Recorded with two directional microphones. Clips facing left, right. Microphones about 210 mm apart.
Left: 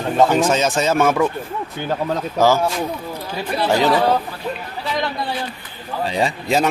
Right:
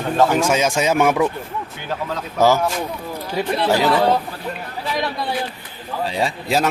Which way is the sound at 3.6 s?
5° right (ahead or behind).